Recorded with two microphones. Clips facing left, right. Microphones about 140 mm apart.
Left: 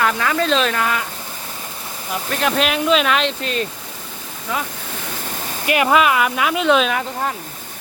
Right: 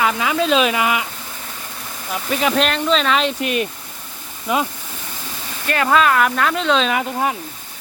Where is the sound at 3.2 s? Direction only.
10° right (ahead or behind).